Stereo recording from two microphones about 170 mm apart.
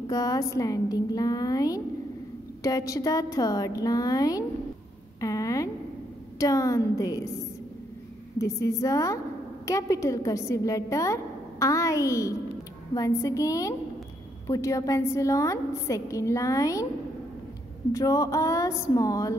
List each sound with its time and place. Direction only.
0.0 s a woman's voice: 20° left (ahead or behind)
8.4 s a woman's voice: 20° left (ahead or behind)
17.9 s a woman's voice: 20° left (ahead or behind)